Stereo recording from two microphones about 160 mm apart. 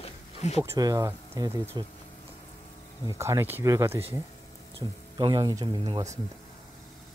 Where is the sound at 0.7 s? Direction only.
25° right (ahead or behind).